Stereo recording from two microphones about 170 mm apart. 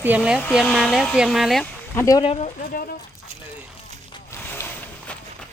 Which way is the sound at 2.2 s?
35° left (ahead or behind).